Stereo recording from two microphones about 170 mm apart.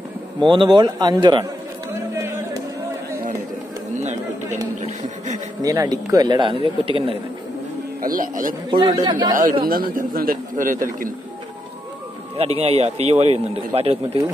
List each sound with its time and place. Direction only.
0.4 s a man's voice: 30° right (ahead or behind)
2.1 s a sound: 15° right (ahead or behind)
4.0 s a sound: 45° right (ahead or behind)
4.8 s speech: 45° right (ahead or behind)
5.6 s a man's voice: 20° right (ahead or behind)
8.0 s a man's voice: 55° right (ahead or behind)
8.6 s a man's voice: 25° right (ahead or behind)
9.4 s a man's voice: 55° right (ahead or behind)
12.4 s speech: 35° right (ahead or behind)